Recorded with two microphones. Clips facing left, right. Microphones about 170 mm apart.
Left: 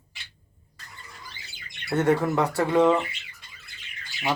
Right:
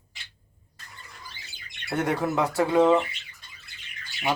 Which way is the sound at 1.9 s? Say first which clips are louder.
Left 4 dB; 15° right (ahead or behind).